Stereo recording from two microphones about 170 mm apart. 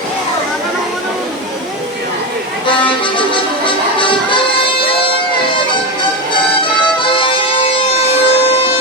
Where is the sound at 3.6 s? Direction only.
30° left (ahead or behind).